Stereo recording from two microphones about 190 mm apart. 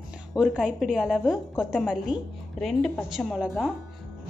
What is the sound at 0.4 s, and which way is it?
A woman's voice, 5° right (ahead or behind).